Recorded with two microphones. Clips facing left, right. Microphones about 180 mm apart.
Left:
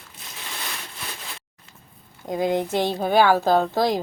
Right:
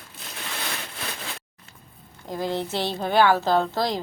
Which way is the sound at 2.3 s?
15° left (ahead or behind).